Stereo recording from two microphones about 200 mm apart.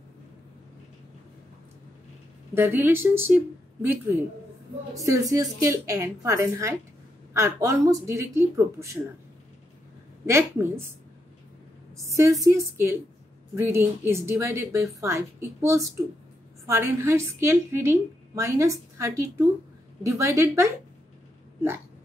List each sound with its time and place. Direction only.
2.5 s a woman's voice: 10° right (ahead or behind)
5.0 s a woman's voice: 15° right (ahead or behind)
10.2 s a woman's voice: 15° right (ahead or behind)
12.1 s a woman's voice: 15° right (ahead or behind)